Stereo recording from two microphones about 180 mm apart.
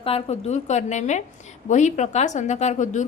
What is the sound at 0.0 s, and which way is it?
Speech, 35° left (ahead or behind).